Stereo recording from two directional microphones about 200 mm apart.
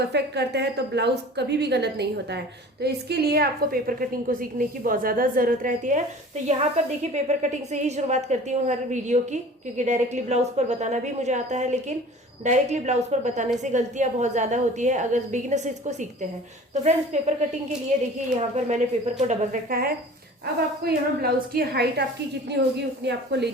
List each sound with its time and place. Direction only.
0.0 s a woman's voice: 55° right (ahead or behind); by 17.3 s 35° right (ahead or behind)
18.3 s a woman's voice: 35° right (ahead or behind)
19.3 s a woman's voice: 45° right (ahead or behind)